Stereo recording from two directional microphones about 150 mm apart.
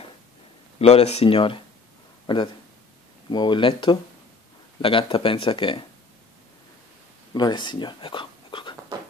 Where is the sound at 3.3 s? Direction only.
30° left (ahead or behind).